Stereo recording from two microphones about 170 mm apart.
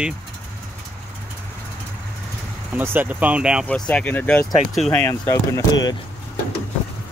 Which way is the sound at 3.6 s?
10° left (ahead or behind).